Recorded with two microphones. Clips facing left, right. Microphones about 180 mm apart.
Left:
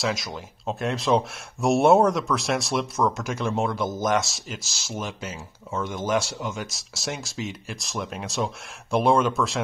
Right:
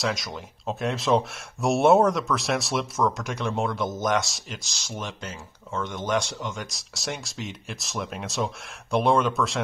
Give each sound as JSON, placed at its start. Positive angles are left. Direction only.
{"t": 0.0, "sound": "speech", "side_deg": 0}